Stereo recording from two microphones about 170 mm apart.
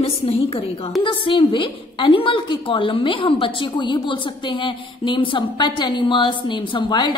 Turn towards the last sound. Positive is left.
turn(degrees=25)  # may be behind; listen again after turning